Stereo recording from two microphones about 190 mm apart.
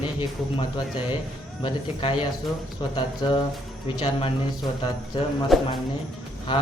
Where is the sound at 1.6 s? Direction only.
30° left (ahead or behind).